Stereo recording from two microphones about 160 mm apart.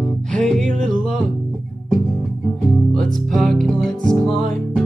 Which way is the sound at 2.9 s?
Centre (ahead or behind).